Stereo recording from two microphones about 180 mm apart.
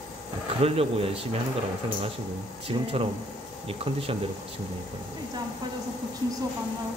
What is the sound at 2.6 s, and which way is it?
Speech, 30° right (ahead or behind).